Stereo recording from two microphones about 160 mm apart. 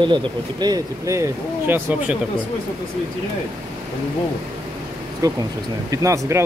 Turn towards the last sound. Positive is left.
turn(degrees=-20)  # may be behind; listen again after turning